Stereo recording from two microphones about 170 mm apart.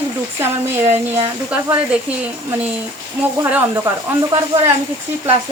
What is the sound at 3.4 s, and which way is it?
Speech, 15° right (ahead or behind).